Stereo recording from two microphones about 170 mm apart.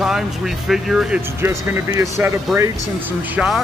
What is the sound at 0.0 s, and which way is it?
Speech, centre (ahead or behind).